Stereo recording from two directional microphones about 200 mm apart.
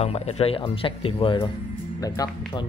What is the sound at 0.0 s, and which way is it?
Speech, 30° left (ahead or behind).